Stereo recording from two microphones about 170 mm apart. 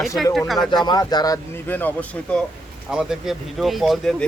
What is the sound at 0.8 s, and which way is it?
Speech, 25° left (ahead or behind).